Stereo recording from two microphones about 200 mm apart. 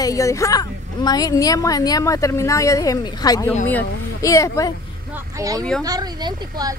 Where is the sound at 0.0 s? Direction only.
15° left (ahead or behind).